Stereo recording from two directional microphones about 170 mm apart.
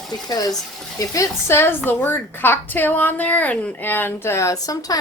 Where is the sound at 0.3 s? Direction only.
20° left (ahead or behind).